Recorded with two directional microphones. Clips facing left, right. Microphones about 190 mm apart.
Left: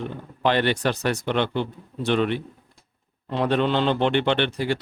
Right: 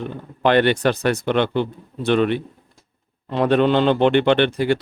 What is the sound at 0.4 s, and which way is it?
A man's voice, 60° right (ahead or behind).